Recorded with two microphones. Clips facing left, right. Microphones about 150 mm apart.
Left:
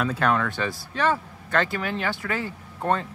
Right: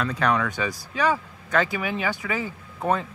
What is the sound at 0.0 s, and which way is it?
Speech, 5° left (ahead or behind).